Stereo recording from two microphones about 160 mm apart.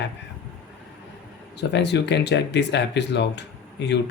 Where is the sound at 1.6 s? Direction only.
90° left.